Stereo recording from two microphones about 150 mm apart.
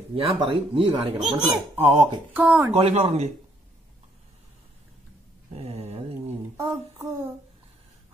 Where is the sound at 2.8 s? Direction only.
45° right (ahead or behind).